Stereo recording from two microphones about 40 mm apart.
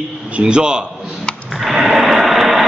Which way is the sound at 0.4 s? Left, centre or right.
Right.